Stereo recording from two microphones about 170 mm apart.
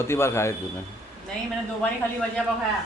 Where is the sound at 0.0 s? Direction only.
15° left (ahead or behind).